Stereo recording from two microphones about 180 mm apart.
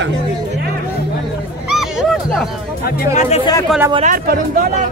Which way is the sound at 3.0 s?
40° left (ahead or behind).